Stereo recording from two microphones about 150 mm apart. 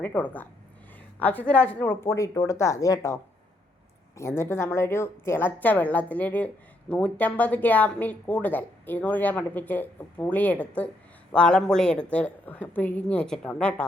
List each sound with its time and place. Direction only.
0.0 s a woman's voice: 10° left (ahead or behind)
4.2 s a woman's voice: 15° left (ahead or behind)